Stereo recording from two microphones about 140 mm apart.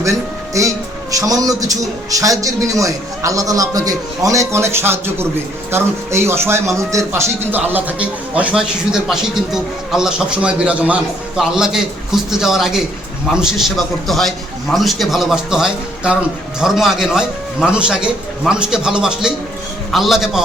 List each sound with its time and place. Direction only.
0.0 s a man's voice: 20° right (ahead or behind); by 20.4 s 5° right (ahead or behind)